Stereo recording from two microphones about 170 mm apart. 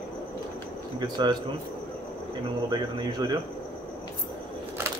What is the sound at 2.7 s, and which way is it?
Speech, 25° right (ahead or behind).